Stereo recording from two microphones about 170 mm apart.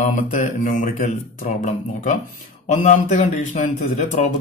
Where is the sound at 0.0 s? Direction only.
45° left (ahead or behind).